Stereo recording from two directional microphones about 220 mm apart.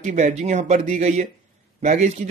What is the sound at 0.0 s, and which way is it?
A man's voice, 35° right (ahead or behind).